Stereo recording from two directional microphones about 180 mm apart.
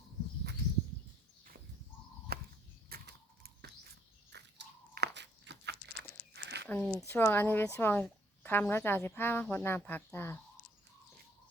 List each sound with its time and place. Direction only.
2.3 s a sound: 60° right (ahead or behind)
2.9 s mechanisms: 60° right (ahead or behind)
4.3 s biting: 70° right (ahead or behind)
6.7 s speech: 10° left (ahead or behind)